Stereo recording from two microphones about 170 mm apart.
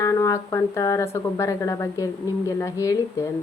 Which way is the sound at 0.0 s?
20° left (ahead or behind).